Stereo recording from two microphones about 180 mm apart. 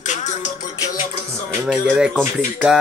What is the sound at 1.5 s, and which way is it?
Speech, 5° right (ahead or behind).